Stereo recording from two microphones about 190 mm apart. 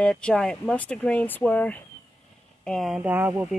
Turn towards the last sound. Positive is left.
turn(degrees=-10)  # may be behind; listen again after turning